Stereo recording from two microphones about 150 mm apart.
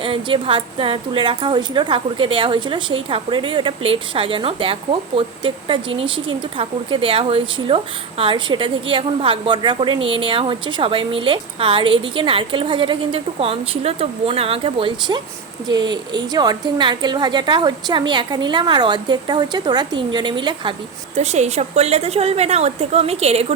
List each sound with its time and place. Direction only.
0.0 s a woman's voice: 35° right (ahead or behind)
21.2 s a woman's voice: 45° right (ahead or behind)